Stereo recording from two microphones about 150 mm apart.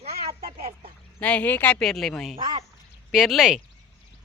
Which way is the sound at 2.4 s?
30° right (ahead or behind).